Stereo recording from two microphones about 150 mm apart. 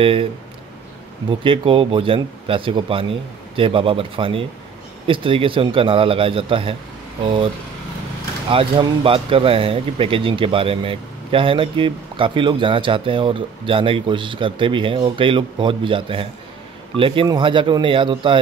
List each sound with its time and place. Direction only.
0.0 s speech: 35° right (ahead or behind)
1.3 s speech: 35° right (ahead or behind)